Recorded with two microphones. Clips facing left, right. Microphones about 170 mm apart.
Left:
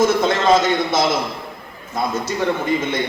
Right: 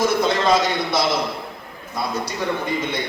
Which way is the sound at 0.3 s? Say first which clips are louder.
Left 3 dB; 50° left (ahead or behind).